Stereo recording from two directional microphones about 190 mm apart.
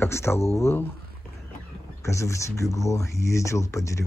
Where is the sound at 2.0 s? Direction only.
15° left (ahead or behind).